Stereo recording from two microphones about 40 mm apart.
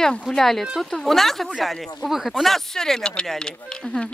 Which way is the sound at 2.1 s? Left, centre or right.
Centre.